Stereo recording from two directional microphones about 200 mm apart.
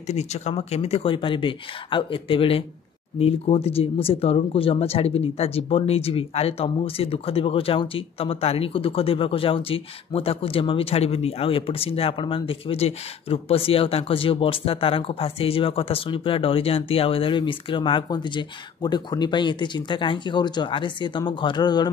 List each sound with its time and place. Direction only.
0.0 s speech: 35° left (ahead or behind)